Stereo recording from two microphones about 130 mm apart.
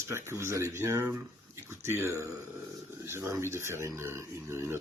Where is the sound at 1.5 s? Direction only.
20° right (ahead or behind).